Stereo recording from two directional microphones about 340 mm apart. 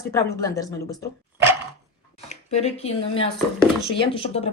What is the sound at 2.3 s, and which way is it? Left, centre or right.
A woman's voice, centre.